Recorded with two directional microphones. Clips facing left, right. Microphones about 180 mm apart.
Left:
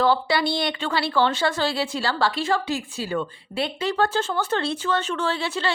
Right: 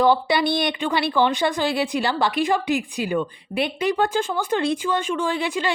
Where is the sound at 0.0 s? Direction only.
20° right (ahead or behind).